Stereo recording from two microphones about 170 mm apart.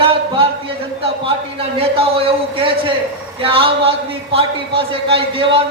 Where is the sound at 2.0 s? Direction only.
35° right (ahead or behind).